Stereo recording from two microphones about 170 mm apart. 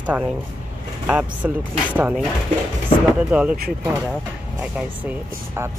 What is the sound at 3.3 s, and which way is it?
Speech, 5° right (ahead or behind).